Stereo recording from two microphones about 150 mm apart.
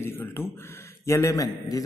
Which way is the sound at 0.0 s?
15° left (ahead or behind).